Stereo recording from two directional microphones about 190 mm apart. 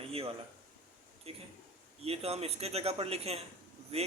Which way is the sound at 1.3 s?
30° right (ahead or behind).